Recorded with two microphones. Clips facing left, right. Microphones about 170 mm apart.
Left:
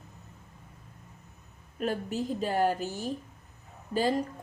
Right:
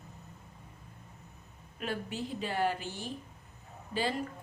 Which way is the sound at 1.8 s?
40° left (ahead or behind).